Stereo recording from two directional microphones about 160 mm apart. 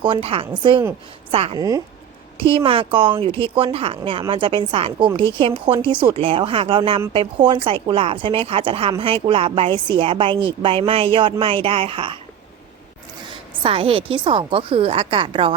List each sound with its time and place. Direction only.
0.0 s speech: 35° right (ahead or behind)
1.5 s a woman's voice: 20° right (ahead or behind)
2.4 s speech: 35° right (ahead or behind)
13.3 s speech: 30° right (ahead or behind)